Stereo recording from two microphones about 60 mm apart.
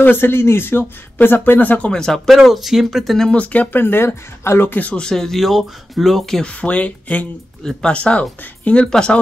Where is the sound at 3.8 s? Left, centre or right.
Left.